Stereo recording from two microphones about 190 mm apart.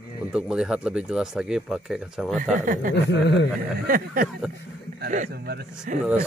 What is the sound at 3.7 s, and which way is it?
Speech, 50° right (ahead or behind).